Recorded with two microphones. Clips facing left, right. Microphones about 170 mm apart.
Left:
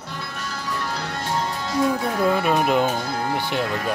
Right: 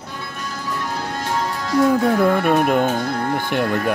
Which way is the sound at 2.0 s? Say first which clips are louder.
Right 4 dB; 55° right (ahead or behind).